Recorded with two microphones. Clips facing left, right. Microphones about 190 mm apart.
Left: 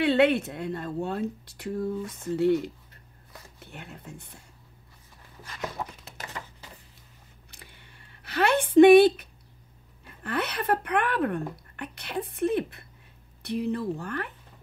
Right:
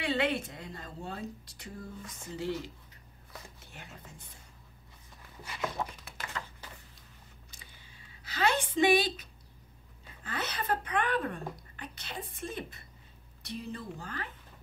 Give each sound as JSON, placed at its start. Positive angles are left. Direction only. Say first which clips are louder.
{"t": 0.0, "sound": "a woman's voice", "louder": "left 9 dB", "side_deg": 65}
{"t": 7.5, "sound": "a sound", "louder": "left 4 dB", "side_deg": 65}
{"t": 10.0, "sound": "a woman's voice", "louder": "left 8 dB", "side_deg": 60}